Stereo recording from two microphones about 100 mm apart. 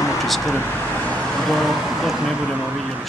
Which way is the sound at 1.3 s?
5° left (ahead or behind).